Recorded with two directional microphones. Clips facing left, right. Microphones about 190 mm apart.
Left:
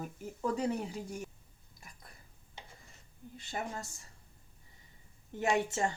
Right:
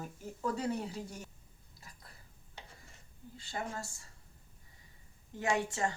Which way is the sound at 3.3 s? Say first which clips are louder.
Left 1 dB; 20° left (ahead or behind).